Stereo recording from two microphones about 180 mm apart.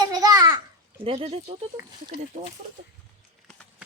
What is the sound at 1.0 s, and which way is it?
Speech, 30° right (ahead or behind).